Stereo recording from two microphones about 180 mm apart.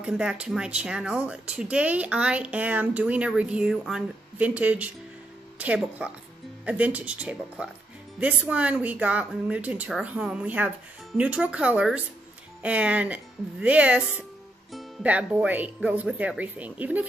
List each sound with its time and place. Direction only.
0.0 s speech: 5° right (ahead or behind)